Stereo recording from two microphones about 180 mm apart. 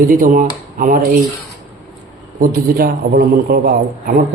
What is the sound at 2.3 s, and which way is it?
A man's voice, 50° right (ahead or behind).